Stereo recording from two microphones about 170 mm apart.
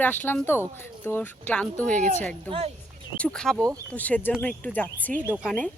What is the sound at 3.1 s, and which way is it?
Speech, 5° left (ahead or behind).